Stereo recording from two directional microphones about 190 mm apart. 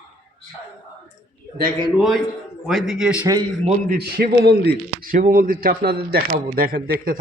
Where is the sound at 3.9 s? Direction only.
50° right (ahead or behind).